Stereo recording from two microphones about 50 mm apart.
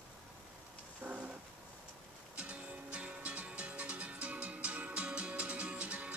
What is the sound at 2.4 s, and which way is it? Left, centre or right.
Music, right.